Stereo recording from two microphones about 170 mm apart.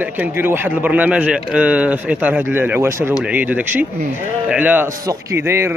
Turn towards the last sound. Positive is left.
turn(degrees=-15)  # may be behind; listen again after turning